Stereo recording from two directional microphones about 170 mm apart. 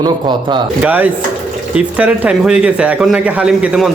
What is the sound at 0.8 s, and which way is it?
A man's voice, 10° right (ahead or behind).